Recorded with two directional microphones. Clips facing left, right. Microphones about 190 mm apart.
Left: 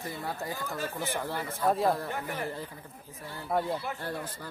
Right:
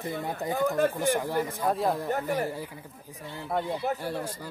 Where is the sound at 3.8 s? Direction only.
40° right (ahead or behind).